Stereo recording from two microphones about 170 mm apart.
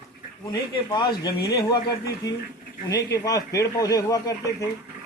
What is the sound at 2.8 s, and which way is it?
Speech, 20° left (ahead or behind).